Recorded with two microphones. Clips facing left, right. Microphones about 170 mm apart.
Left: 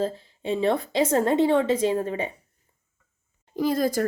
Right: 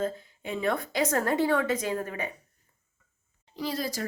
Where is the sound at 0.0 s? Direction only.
30° left (ahead or behind).